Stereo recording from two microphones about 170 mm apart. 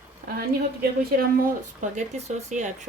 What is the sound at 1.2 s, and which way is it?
Speech, 50° right (ahead or behind).